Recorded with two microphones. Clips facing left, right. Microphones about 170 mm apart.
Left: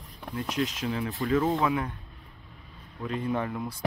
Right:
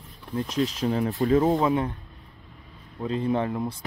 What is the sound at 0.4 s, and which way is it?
Speech, 30° right (ahead or behind).